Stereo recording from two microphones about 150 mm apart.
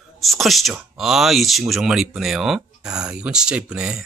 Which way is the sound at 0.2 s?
Centre (ahead or behind).